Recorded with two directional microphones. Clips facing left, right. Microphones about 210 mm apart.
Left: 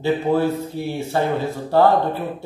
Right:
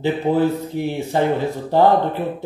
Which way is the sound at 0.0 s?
15° right (ahead or behind).